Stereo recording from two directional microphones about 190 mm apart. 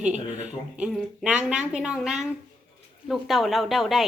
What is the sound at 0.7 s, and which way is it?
A woman's voice, centre (ahead or behind).